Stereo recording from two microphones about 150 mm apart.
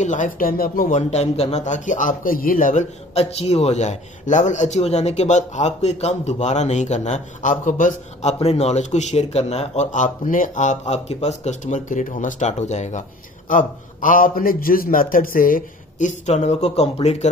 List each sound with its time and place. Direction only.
0.0 s a man's voice: 55° left (ahead or behind)
1.1 s a man's voice: 45° left (ahead or behind)
13.5 s a man's voice: 60° left (ahead or behind); by 17.3 s 45° left (ahead or behind)